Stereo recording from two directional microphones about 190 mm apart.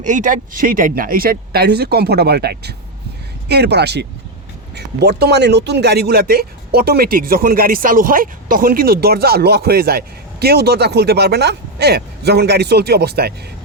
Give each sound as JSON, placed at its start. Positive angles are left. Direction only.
{"t": 0.0, "sound": "a man's voice", "side_deg": -40}